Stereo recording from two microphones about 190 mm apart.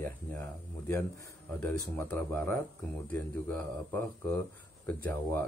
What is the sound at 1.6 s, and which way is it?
Speech, 10° left (ahead or behind).